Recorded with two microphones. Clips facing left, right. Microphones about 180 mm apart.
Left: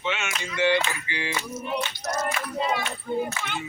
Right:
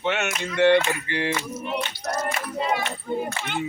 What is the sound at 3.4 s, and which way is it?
Speech, 55° right (ahead or behind).